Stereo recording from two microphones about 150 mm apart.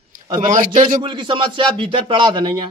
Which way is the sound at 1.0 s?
35° right (ahead or behind).